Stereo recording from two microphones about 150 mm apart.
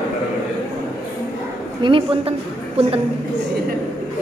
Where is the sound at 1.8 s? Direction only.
35° right (ahead or behind).